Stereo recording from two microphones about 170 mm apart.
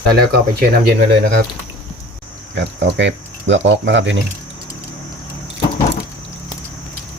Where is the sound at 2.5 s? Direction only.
90° right.